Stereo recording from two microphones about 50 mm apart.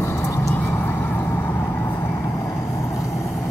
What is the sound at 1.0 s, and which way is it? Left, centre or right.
Vehicle, left.